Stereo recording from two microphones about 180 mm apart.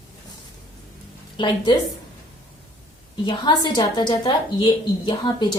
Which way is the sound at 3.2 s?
25° left (ahead or behind).